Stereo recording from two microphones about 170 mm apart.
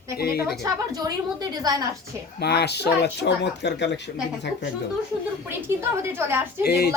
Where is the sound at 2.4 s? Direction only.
70° left (ahead or behind); by 4.0 s 90° left.